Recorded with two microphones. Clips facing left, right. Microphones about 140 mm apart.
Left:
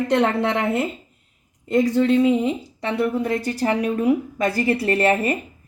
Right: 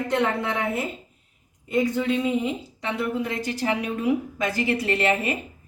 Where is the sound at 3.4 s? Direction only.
40° left (ahead or behind).